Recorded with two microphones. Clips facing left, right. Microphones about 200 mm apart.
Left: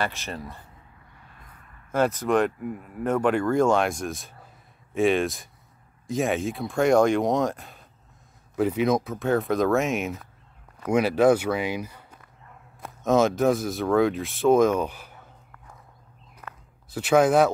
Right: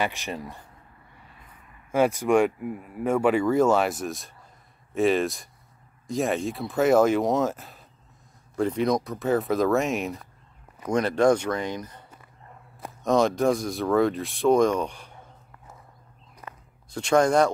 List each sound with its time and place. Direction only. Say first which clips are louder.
0.0 s speech: right 1 dB; 15° right (ahead or behind); by 15.1 s 5° left (ahead or behind)
16.4 s walk: even; 10° right (ahead or behind)
16.9 s speech: left 1 dB; 5° left (ahead or behind)